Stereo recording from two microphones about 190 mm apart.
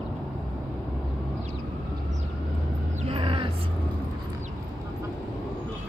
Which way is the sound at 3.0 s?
30° right (ahead or behind).